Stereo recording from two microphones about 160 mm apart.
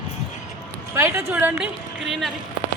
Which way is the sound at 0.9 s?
15° right (ahead or behind).